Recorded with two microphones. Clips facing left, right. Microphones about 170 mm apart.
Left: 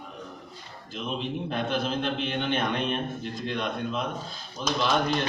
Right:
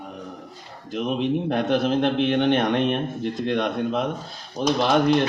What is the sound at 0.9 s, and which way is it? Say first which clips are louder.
A man's voice: right 9 dB; 65° right (ahead or behind).